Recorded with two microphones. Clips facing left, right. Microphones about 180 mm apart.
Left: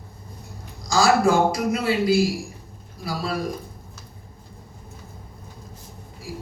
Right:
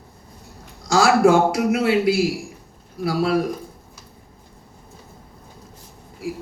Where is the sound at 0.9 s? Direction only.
70° right (ahead or behind).